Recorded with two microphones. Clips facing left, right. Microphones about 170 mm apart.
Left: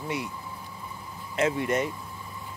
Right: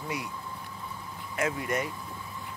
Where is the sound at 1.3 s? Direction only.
25° left (ahead or behind).